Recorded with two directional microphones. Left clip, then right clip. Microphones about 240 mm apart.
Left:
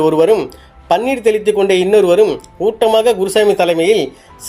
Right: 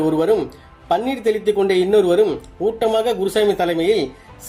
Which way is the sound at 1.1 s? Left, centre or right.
Left.